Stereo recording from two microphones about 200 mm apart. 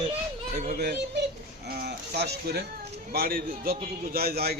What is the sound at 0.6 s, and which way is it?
A man's voice, 50° right (ahead or behind).